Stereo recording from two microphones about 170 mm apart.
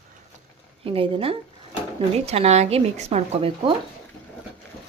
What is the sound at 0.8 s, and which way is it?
Speech, 35° right (ahead or behind).